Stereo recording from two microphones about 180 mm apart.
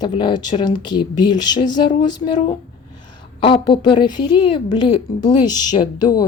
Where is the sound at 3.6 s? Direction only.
25° left (ahead or behind).